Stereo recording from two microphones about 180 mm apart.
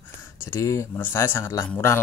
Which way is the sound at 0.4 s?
15° left (ahead or behind).